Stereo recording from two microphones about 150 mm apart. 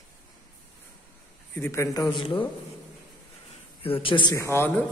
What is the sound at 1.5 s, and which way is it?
Speech, 15° left (ahead or behind).